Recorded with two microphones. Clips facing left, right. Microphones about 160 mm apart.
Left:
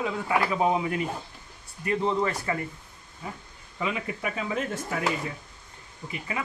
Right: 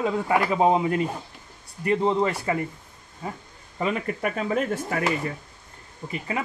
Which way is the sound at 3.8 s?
45° right (ahead or behind).